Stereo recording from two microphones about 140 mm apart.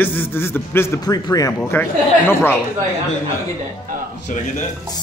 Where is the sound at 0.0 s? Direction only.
15° left (ahead or behind).